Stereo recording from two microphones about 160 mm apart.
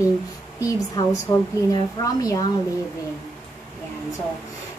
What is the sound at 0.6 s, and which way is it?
A woman's voice, 20° left (ahead or behind).